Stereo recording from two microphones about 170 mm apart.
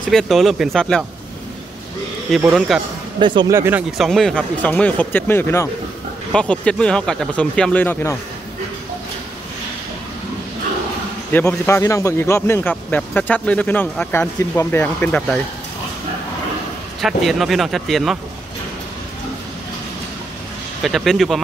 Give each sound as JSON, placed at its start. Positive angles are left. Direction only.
{"t": 0.1, "sound": "speech", "side_deg": 0}
{"t": 2.4, "sound": "speech", "side_deg": -5}
{"t": 3.2, "sound": "speech", "side_deg": -25}
{"t": 3.5, "sound": "speech", "side_deg": -15}
{"t": 4.0, "sound": "a man's voice", "side_deg": 5}
{"t": 11.3, "sound": "a man's voice", "side_deg": 15}
{"t": 17.0, "sound": "speech", "side_deg": 0}
{"t": 20.8, "sound": "speech", "side_deg": 0}